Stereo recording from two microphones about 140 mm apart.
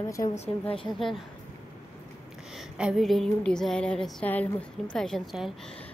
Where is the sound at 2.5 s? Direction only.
Centre (ahead or behind).